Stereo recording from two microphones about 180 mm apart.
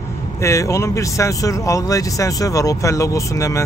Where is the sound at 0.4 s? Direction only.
15° left (ahead or behind).